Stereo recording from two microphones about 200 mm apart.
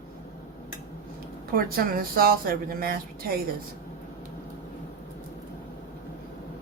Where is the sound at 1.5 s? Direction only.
45° right (ahead or behind).